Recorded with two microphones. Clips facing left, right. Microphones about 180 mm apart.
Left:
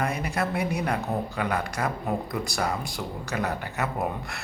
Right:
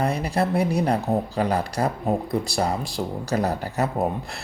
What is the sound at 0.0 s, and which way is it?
Speech, 35° right (ahead or behind).